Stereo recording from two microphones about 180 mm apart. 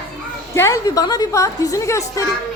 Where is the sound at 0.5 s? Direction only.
15° left (ahead or behind).